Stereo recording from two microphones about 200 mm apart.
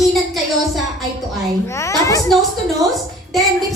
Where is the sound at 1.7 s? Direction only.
15° left (ahead or behind).